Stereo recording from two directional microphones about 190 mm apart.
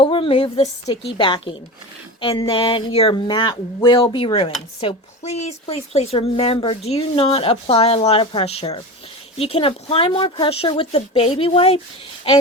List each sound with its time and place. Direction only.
0.0 s a woman's voice: 25° left (ahead or behind)